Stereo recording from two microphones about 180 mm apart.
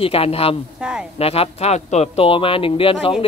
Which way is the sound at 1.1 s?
35° left (ahead or behind).